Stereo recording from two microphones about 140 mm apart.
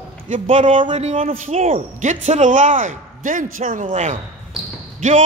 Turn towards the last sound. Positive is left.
turn(degrees=-60)  # may be behind; listen again after turning